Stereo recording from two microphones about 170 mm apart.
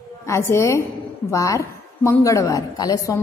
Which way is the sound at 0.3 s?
15° left (ahead or behind).